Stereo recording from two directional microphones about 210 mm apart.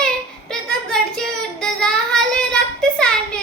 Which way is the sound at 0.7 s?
5° left (ahead or behind).